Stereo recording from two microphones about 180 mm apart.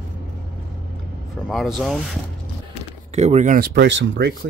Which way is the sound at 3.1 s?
40° right (ahead or behind).